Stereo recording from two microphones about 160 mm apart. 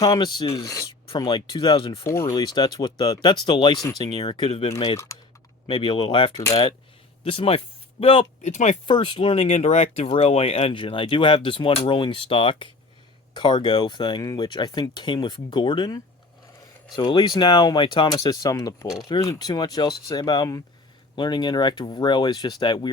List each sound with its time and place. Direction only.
0.0 s speech: 25° left (ahead or behind)
2.0 s speech: 20° left (ahead or behind); by 4.7 s 40° left (ahead or behind)
5.1 s typing: 20° left (ahead or behind)
5.6 s speech: 30° left (ahead or behind)
8.4 s speech: 45° left (ahead or behind)
8.9 s speech: 30° left (ahead or behind)